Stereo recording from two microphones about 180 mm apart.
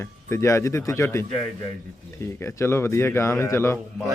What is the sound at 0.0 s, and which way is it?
Speech, 15° left (ahead or behind).